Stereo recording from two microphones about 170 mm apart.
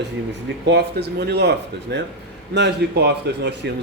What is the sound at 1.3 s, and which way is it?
Speech, 75° right (ahead or behind).